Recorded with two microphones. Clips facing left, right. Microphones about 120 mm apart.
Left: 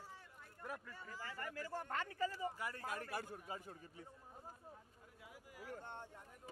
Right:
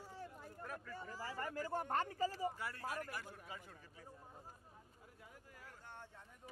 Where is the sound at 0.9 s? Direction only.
35° right (ahead or behind).